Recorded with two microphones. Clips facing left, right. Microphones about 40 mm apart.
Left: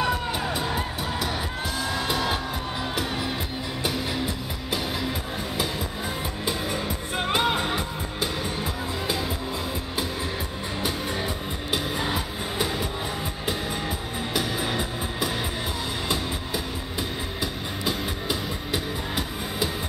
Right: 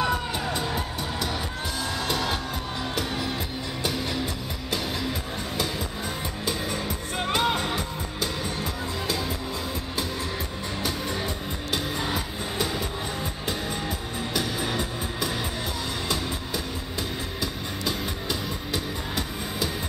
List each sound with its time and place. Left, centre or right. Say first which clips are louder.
0.0 s music: left 1 dB; centre
6.4 s music: left 1 dB; centre
10.8 s music: left 1 dB; centre
17.4 s music: left 1 dB; centre